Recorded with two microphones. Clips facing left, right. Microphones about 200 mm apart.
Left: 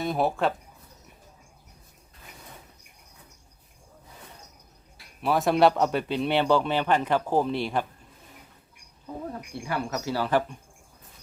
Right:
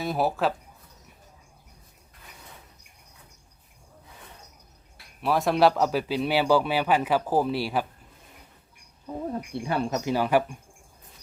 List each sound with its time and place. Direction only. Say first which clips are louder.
0.0 s a man's voice: even; centre (ahead or behind)
5.2 s a man's voice: even; centre (ahead or behind)
9.3 s speech: right 4 dB; 25° right (ahead or behind)